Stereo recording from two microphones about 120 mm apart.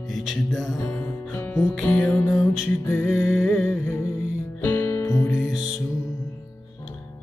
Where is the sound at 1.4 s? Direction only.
20° left (ahead or behind).